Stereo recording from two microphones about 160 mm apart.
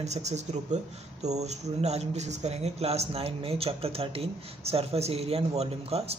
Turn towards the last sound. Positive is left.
turn(degrees=-40)  # may be behind; listen again after turning